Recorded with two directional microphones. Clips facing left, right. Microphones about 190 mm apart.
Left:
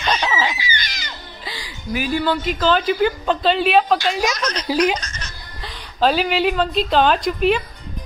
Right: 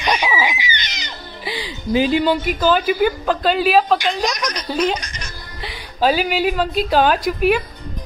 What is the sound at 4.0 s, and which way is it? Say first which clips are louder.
Speech: even; 15° right (ahead or behind).